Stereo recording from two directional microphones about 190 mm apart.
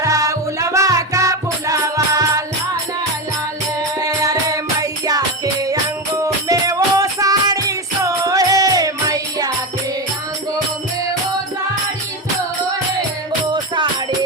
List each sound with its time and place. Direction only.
0.0 s music: 15° right (ahead or behind)
4.0 s music: 20° right (ahead or behind)